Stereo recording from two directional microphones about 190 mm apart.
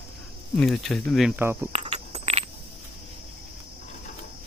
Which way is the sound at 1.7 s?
35° right (ahead or behind).